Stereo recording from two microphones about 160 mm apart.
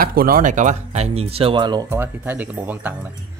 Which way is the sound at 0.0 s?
65° right (ahead or behind).